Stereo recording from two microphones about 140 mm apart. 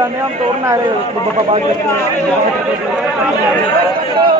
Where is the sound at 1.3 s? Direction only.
50° right (ahead or behind).